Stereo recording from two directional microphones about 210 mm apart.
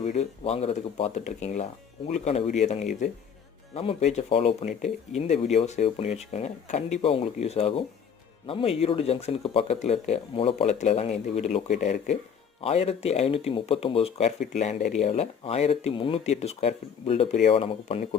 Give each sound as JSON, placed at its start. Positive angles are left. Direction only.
{"t": 0.0, "sound": "speech", "side_deg": 30}